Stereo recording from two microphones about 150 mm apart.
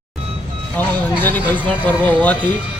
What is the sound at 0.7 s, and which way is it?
A man's voice, 10° left (ahead or behind).